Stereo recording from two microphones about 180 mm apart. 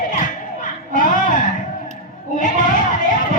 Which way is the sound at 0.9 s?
45° left (ahead or behind).